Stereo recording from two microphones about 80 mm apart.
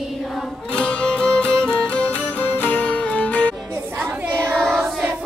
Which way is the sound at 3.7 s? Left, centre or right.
Right.